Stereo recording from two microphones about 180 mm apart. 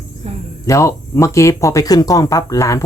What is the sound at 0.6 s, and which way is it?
Speech, 15° left (ahead or behind).